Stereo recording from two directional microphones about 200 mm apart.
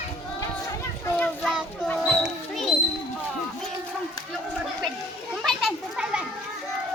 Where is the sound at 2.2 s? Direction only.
Centre (ahead or behind).